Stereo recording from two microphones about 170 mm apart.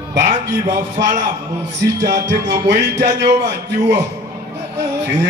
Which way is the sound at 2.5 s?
85° right.